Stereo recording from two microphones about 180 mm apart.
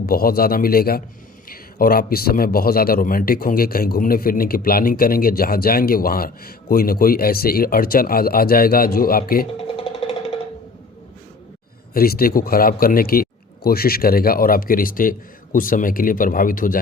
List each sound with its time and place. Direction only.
0.0 s a man's voice: 55° left (ahead or behind)
9.6 s music: 30° left (ahead or behind)
11.9 s a man's voice: 55° left (ahead or behind)